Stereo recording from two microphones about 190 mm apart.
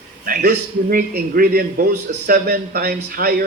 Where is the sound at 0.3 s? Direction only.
55° right (ahead or behind).